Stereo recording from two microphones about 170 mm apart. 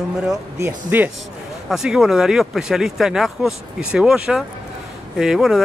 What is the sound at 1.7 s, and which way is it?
Speech, centre (ahead or behind).